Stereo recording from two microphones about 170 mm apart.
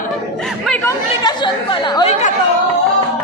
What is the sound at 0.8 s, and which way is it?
Chatter, 25° left (ahead or behind).